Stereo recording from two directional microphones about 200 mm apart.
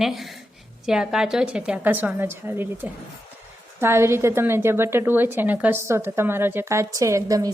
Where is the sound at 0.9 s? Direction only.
5° right (ahead or behind).